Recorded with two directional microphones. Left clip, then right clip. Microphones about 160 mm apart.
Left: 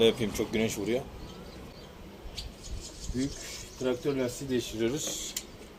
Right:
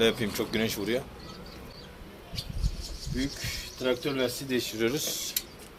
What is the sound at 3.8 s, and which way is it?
Speech, 5° right (ahead or behind).